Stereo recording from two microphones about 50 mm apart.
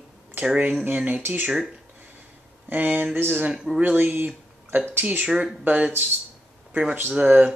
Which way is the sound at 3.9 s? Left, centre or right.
Right.